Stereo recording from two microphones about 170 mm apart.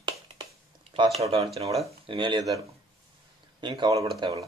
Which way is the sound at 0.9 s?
35° right (ahead or behind).